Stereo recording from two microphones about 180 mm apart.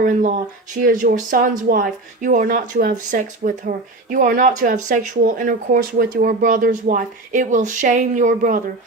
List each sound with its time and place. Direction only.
0.0 s speech: 45° right (ahead or behind)